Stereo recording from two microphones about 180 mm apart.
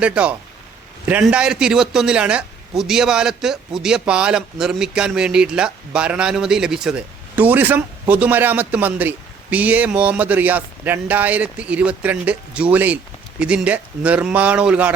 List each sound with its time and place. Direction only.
0.0 s a man's voice: 5° right (ahead or behind)